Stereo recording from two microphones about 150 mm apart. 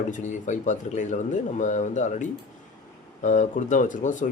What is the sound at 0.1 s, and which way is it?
Speech, 55° left (ahead or behind).